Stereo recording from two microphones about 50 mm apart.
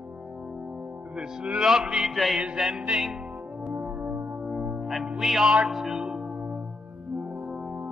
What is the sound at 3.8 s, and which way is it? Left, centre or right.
Music, right.